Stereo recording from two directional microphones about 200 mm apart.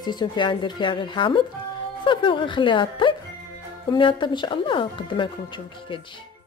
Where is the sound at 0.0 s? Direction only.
20° left (ahead or behind).